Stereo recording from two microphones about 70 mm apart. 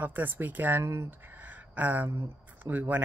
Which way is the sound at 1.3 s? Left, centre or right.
Right.